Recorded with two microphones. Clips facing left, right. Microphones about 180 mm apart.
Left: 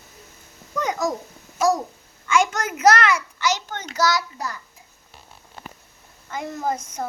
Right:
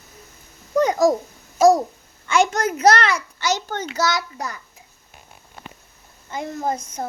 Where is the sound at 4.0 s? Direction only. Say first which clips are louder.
Left 2 dB; 25° right (ahead or behind).